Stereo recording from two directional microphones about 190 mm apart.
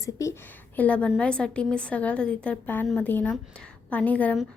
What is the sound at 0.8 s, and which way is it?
A woman's voice, 5° left (ahead or behind).